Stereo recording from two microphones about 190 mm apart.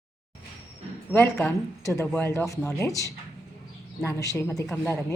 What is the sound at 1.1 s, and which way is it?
A man's voice, 10° left (ahead or behind).